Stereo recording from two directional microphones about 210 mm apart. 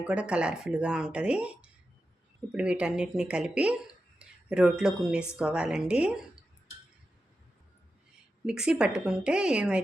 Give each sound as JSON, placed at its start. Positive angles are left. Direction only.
{"t": 0.1, "sound": "speech", "side_deg": -5}
{"t": 8.4, "sound": "speech", "side_deg": -5}